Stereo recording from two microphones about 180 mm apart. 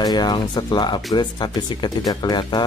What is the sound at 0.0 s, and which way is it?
Speech, 25° left (ahead or behind).